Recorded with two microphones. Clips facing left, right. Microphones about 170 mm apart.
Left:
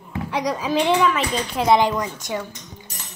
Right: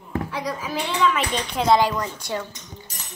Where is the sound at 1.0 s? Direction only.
Centre (ahead or behind).